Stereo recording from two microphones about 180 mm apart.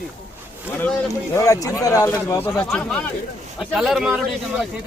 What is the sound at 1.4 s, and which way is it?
Speech, 20° left (ahead or behind).